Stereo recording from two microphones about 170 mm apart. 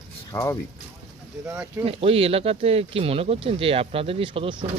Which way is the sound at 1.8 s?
35° right (ahead or behind).